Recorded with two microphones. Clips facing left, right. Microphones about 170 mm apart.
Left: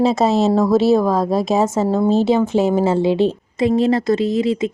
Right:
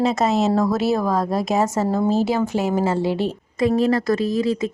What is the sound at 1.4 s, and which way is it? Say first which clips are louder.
Speech: left 3 dB; 25° left (ahead or behind).